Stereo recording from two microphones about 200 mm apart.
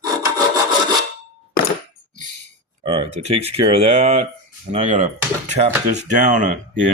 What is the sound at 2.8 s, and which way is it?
Speech, 30° right (ahead or behind).